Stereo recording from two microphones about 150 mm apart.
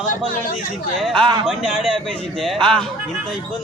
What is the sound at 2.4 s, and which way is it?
Speech, centre (ahead or behind).